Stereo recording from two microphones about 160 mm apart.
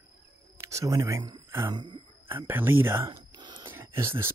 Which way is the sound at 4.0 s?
15° right (ahead or behind).